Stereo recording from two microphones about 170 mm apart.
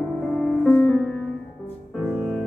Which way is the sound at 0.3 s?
Centre (ahead or behind).